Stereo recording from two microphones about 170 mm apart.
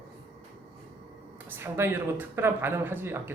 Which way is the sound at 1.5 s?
15° right (ahead or behind).